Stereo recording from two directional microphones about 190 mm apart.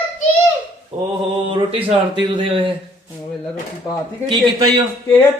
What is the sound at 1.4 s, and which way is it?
A man's voice, 25° right (ahead or behind).